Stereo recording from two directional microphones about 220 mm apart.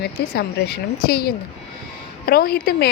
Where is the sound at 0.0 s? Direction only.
45° left (ahead or behind).